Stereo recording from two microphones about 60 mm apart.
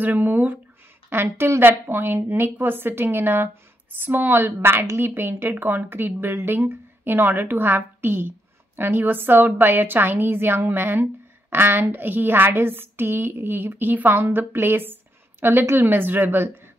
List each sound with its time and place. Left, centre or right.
0.0 s speech: right
1.1 s a woman's voice: right